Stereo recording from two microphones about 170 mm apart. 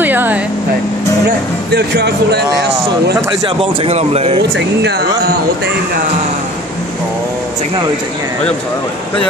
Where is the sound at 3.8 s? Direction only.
35° right (ahead or behind).